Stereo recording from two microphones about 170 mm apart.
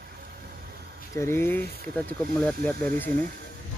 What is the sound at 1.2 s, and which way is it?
Speech, 15° left (ahead or behind).